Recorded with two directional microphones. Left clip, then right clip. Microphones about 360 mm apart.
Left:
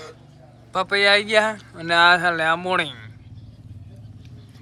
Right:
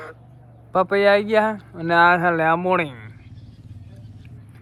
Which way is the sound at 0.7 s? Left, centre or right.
Centre.